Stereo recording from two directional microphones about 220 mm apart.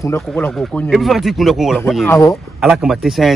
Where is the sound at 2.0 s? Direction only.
15° left (ahead or behind).